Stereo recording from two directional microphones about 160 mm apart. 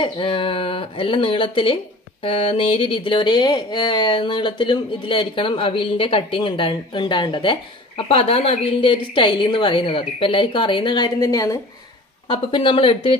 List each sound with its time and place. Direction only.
0.0 s speech: 35° left (ahead or behind)
12.3 s speech: 30° left (ahead or behind)